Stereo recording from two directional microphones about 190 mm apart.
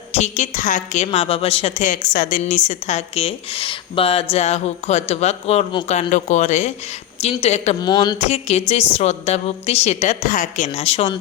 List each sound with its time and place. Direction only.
0.1 s a woman's voice: 35° left (ahead or behind)
7.8 s a sound: 20° left (ahead or behind)
8.3 s a woman's voice: 35° left (ahead or behind)